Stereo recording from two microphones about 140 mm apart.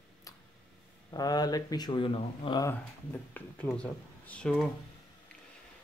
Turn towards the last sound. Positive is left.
turn(degrees=5)  # may be behind; listen again after turning